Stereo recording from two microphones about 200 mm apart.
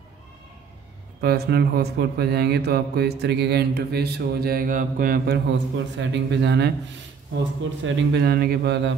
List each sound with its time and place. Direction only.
1.2 s mantra: 50° right (ahead or behind)
7.8 s a man's voice: 65° right (ahead or behind)